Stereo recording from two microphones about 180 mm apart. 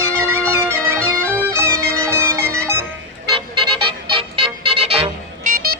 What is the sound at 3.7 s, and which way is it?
Music, 30° right (ahead or behind).